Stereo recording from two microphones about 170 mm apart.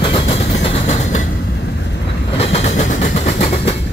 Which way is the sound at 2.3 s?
35° left (ahead or behind).